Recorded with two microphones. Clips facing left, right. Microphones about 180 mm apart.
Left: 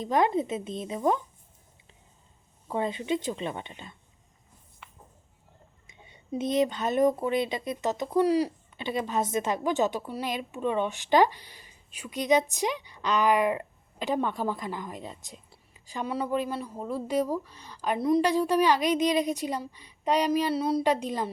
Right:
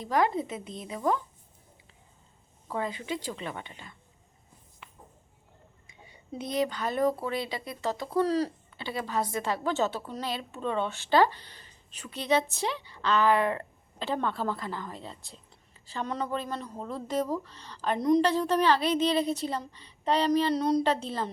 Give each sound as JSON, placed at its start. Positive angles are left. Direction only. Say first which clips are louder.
{"t": 0.0, "sound": "a woman's voice", "louder": "left 2 dB", "side_deg": 20}
{"t": 2.6, "sound": "a woman's voice", "louder": "left 4 dB", "side_deg": 25}
{"t": 5.9, "sound": "speech", "louder": "left 7 dB", "side_deg": 20}